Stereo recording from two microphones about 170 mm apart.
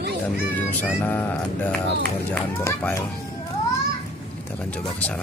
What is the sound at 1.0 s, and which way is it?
Speech, 10° left (ahead or behind).